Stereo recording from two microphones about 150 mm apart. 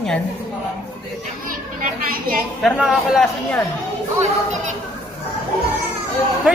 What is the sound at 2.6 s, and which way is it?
A man's voice, centre (ahead or behind).